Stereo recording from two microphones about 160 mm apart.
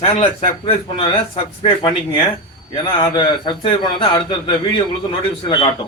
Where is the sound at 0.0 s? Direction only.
35° left (ahead or behind).